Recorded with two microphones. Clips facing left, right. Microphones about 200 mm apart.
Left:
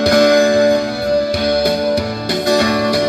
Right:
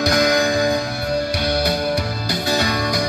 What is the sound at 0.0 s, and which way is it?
Music, 30° left (ahead or behind).